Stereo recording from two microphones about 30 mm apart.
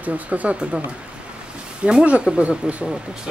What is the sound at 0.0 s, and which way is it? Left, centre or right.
Speech, right.